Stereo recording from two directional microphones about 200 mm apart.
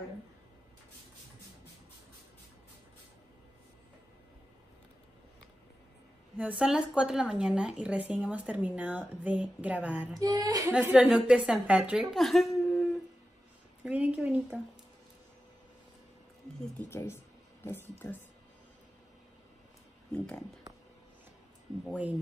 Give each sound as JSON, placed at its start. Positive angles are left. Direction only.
{"t": 6.3, "sound": "a woman's voice", "side_deg": -5}
{"t": 10.1, "sound": "a woman's voice", "side_deg": -20}
{"t": 10.7, "sound": "speech", "side_deg": -5}
{"t": 13.8, "sound": "speech", "side_deg": -5}
{"t": 16.7, "sound": "a woman's voice", "side_deg": 10}
{"t": 21.8, "sound": "a woman's voice", "side_deg": -5}